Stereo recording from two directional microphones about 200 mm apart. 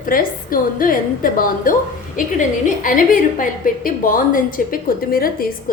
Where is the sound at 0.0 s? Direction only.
45° left (ahead or behind).